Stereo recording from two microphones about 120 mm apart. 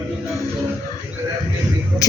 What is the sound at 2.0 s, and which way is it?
Speech, 30° left (ahead or behind).